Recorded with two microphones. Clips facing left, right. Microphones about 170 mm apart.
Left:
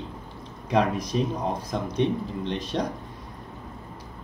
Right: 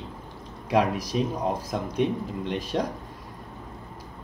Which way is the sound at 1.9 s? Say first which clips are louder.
Left 1 dB; 5° right (ahead or behind).